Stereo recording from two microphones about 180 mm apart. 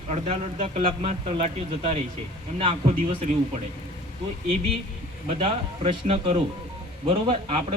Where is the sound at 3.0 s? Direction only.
40° right (ahead or behind).